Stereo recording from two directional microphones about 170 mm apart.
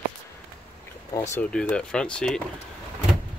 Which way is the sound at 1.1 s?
20° left (ahead or behind).